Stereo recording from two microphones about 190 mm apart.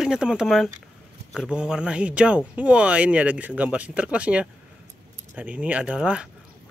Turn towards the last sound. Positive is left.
turn(degrees=-5)  # may be behind; listen again after turning